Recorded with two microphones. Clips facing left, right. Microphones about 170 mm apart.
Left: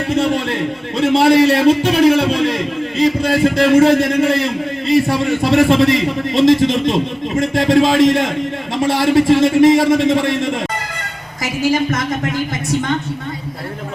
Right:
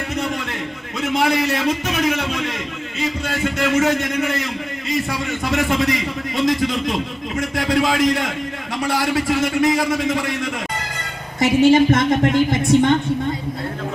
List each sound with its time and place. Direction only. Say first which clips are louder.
0.1 s a man's voice: left 11 dB; 30° left (ahead or behind)
11.7 s speech: right 4 dB; 25° right (ahead or behind)